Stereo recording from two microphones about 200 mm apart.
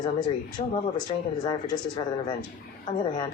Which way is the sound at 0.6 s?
35° left (ahead or behind).